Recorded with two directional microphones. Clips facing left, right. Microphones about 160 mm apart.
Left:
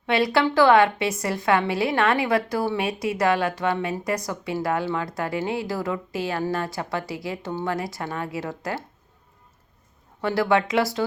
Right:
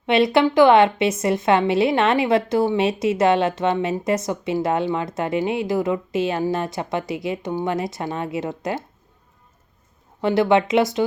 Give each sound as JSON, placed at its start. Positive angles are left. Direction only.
{"t": 0.0, "sound": "a woman's voice", "side_deg": -20}
{"t": 10.2, "sound": "a woman's voice", "side_deg": -20}